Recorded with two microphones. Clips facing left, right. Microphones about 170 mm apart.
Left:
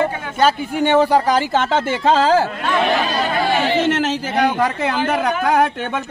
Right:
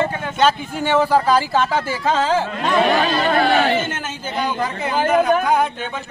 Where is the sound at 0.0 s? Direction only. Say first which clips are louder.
Left 1 dB; 10° left (ahead or behind).